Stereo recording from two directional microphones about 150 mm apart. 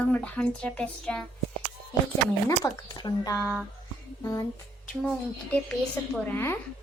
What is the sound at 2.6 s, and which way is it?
Speech, 25° left (ahead or behind).